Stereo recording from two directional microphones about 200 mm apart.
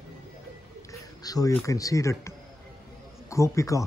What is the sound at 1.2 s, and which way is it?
Speech, 20° left (ahead or behind).